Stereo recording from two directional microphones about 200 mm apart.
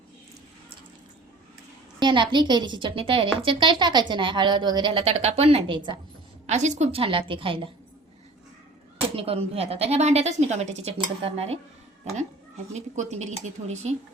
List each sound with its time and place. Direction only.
2.0 s a woman's voice: 25° right (ahead or behind)
6.5 s a woman's voice: 35° right (ahead or behind)
9.1 s a woman's voice: 30° right (ahead or behind)
12.7 s a woman's voice: 35° right (ahead or behind)